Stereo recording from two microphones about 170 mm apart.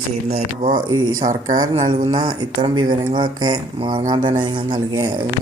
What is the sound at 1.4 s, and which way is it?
Speech, 20° right (ahead or behind).